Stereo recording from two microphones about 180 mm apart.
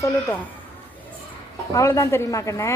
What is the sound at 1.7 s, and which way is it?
A woman's voice, 15° left (ahead or behind).